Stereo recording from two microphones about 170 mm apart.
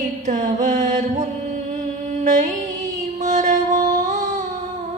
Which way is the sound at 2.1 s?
45° right (ahead or behind).